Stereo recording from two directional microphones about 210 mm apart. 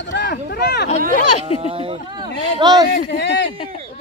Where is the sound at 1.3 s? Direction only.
90° left.